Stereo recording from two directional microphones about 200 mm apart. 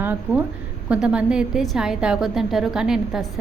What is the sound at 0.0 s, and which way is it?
A woman's voice, 10° right (ahead or behind).